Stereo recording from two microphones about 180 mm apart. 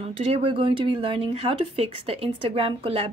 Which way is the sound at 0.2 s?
30° right (ahead or behind).